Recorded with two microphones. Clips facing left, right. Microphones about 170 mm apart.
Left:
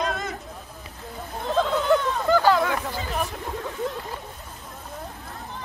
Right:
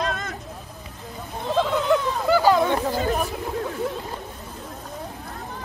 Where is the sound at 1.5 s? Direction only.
Centre (ahead or behind).